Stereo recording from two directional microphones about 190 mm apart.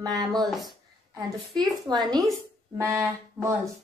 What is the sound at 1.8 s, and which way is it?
A woman's voice, 20° right (ahead or behind).